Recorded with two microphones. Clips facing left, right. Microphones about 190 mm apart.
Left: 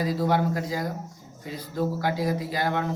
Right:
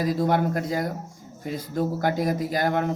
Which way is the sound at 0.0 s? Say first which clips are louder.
Right 2 dB; 50° right (ahead or behind).